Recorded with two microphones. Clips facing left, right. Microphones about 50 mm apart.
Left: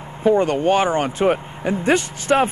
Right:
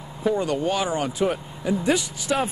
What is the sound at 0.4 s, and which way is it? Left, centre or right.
Speech, left.